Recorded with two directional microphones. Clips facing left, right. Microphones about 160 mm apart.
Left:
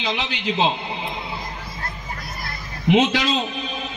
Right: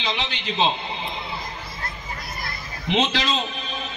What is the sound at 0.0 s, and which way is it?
Speech, 10° left (ahead or behind).